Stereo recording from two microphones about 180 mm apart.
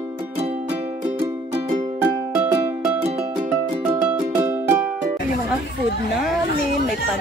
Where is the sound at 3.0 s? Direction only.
35° right (ahead or behind).